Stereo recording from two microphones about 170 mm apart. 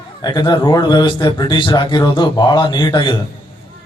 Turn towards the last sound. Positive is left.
turn(degrees=25)  # may be behind; listen again after turning